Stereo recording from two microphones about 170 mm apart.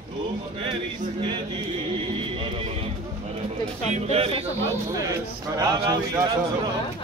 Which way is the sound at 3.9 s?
35° right (ahead or behind).